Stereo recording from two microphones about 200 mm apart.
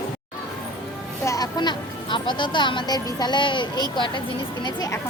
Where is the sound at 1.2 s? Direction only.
20° left (ahead or behind).